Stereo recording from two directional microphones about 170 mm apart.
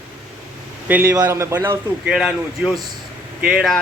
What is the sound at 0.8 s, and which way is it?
Speech, 15° right (ahead or behind).